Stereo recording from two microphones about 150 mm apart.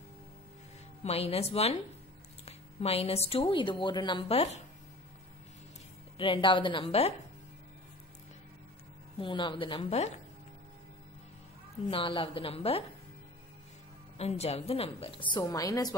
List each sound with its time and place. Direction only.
1.0 s a woman's voice: 40° left (ahead or behind)
6.1 s a woman's voice: 35° left (ahead or behind)
9.2 s a woman's voice: 35° left (ahead or behind)
11.9 s a woman's voice: 35° left (ahead or behind)
14.1 s a woman's voice: 45° left (ahead or behind); by 15.9 s 25° left (ahead or behind)